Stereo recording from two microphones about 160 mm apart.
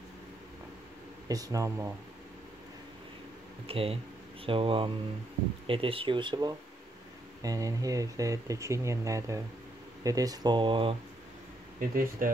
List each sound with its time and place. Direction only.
1.3 s speech: 20° right (ahead or behind)
3.6 s speech: 35° right (ahead or behind)
11.9 s speech: 60° right (ahead or behind)